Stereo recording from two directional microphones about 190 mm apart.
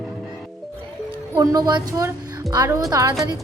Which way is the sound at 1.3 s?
15° right (ahead or behind).